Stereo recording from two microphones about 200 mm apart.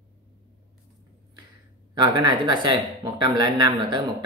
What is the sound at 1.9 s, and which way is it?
Speech, 20° right (ahead or behind).